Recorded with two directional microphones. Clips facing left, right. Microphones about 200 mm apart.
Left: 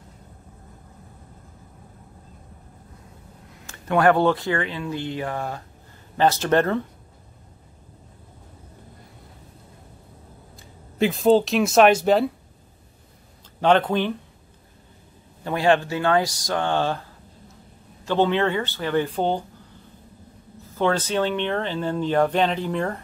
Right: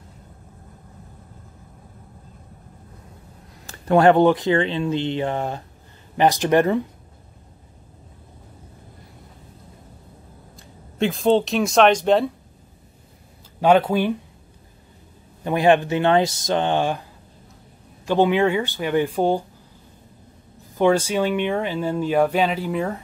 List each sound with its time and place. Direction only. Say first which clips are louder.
3.6 s speech: right 4 dB; 30° right (ahead or behind); by 6.8 s 15° right (ahead or behind)
10.5 s speech: right 1 dB; centre (ahead or behind)
13.6 s speech: right 2 dB; 10° right (ahead or behind)
15.4 s speech: right 3 dB; 15° right (ahead or behind)
18.0 s speech: right 3 dB; 15° right (ahead or behind)
20.6 s speech: right 5 dB; 15° right (ahead or behind)